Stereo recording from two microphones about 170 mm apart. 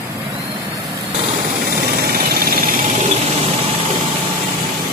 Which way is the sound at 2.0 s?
65° right (ahead or behind).